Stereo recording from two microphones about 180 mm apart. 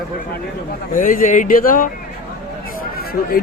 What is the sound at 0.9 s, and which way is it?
Speech, 50° left (ahead or behind).